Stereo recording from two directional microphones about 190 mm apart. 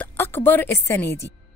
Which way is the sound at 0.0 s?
10° left (ahead or behind).